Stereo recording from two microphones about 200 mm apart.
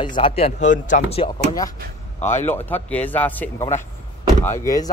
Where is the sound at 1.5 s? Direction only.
20° left (ahead or behind).